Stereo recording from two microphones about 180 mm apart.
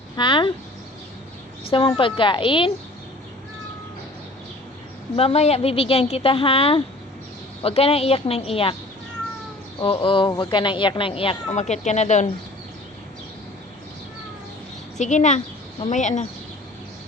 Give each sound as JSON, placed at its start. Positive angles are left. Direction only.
{"t": 0.2, "sound": "speech", "side_deg": 25}
{"t": 2.0, "sound": "speech", "side_deg": 30}
{"t": 5.1, "sound": "a woman's voice", "side_deg": 35}
{"t": 9.8, "sound": "speech", "side_deg": 30}
{"t": 14.9, "sound": "a woman's voice", "side_deg": 40}